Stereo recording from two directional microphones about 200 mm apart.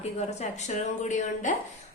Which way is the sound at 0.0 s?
35° left (ahead or behind).